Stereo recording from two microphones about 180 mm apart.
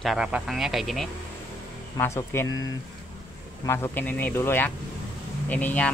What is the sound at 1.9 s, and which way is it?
Speech, 15° left (ahead or behind).